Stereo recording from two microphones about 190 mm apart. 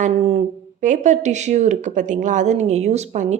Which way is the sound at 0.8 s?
40° right (ahead or behind).